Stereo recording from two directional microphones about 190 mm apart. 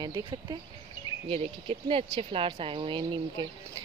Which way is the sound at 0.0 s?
25° right (ahead or behind).